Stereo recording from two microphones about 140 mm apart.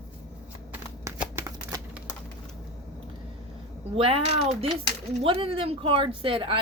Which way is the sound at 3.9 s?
45° right (ahead or behind).